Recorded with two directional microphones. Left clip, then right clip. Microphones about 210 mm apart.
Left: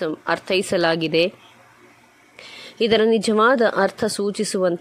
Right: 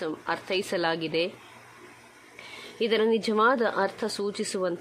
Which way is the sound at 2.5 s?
25° left (ahead or behind).